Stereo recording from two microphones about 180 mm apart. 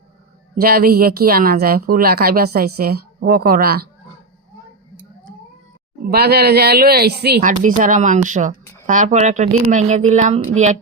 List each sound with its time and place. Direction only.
0.5 s a woman's voice: 55° right (ahead or behind)
6.1 s a woman's voice: 60° right (ahead or behind)
7.6 s speech: 45° right (ahead or behind)